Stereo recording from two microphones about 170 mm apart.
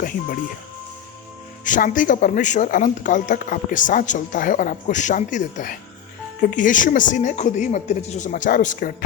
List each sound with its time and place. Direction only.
1.6 s speech: 50° left (ahead or behind)